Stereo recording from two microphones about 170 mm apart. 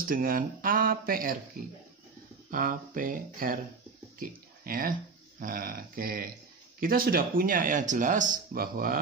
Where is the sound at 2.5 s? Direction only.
55° right (ahead or behind).